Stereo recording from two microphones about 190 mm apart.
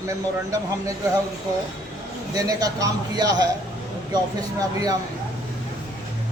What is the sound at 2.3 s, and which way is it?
A man's voice, 20° right (ahead or behind).